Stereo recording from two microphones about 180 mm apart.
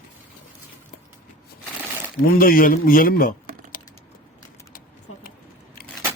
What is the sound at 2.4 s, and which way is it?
Speech, 50° left (ahead or behind).